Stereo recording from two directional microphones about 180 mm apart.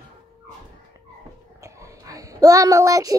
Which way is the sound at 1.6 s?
15° right (ahead or behind).